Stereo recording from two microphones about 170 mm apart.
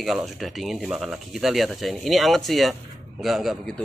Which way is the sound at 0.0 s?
Centre (ahead or behind).